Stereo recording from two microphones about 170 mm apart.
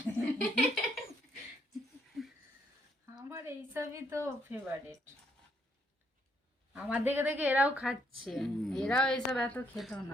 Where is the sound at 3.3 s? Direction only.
15° right (ahead or behind).